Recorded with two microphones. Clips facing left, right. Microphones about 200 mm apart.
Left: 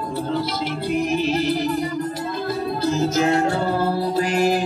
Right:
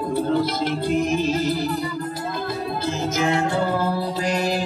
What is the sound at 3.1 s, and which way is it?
Music, 40° left (ahead or behind).